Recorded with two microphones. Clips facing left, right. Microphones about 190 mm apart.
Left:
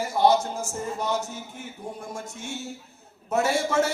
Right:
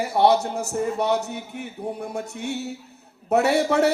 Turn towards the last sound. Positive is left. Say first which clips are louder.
# right 4 dB
turn(degrees=-65)  # may be behind; listen again after turning